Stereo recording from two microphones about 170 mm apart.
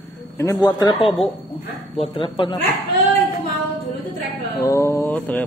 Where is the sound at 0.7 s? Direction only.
25° left (ahead or behind).